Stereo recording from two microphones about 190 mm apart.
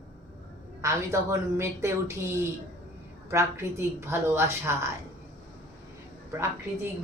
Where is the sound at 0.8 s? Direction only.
15° right (ahead or behind).